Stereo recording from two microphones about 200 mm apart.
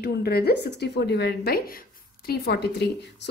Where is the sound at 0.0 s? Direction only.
50° left (ahead or behind).